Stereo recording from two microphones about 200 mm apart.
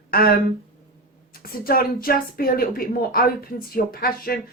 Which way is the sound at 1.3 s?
45° left (ahead or behind).